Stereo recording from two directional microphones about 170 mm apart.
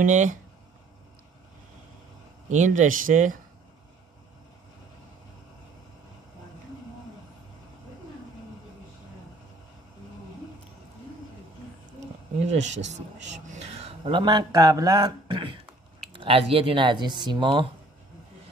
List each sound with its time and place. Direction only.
0.0 s speech: 45° right (ahead or behind)
2.5 s speech: 45° right (ahead or behind)
12.0 s a sound: 40° right (ahead or behind)
12.6 s speech: 90° right
13.3 s speech: 40° right (ahead or behind)